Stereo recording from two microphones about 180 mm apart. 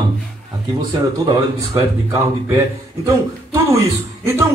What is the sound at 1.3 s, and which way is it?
Speech, 20° right (ahead or behind).